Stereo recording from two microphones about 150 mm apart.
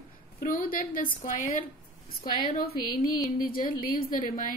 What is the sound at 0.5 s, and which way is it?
Speech, 65° left (ahead or behind).